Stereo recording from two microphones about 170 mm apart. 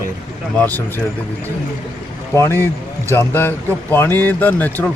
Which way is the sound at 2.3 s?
15° left (ahead or behind).